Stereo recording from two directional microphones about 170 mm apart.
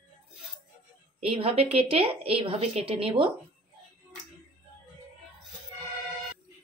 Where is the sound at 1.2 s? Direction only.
35° right (ahead or behind).